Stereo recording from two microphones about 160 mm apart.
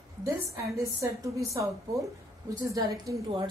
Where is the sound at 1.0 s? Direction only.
20° right (ahead or behind).